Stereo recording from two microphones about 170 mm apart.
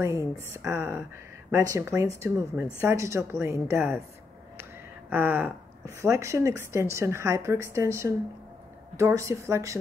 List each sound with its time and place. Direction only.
0.0 s a woman's voice: 15° right (ahead or behind)
5.1 s a woman's voice: 15° right (ahead or behind)